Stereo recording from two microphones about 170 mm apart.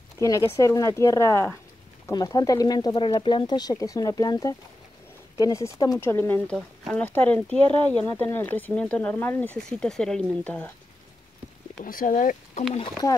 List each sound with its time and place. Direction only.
0.2 s speech: 15° left (ahead or behind)
11.8 s speech: 55° left (ahead or behind)